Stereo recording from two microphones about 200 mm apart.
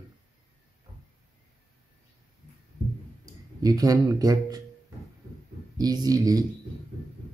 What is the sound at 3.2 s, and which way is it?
Speech, 20° right (ahead or behind).